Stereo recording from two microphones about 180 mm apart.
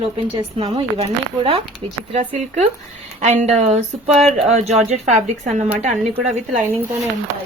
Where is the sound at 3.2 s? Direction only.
35° right (ahead or behind).